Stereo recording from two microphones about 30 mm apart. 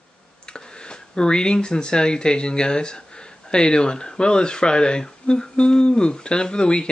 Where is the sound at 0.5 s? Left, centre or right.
Left.